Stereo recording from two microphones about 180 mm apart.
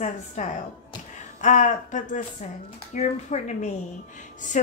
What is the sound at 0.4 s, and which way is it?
A woman's voice, 40° left (ahead or behind).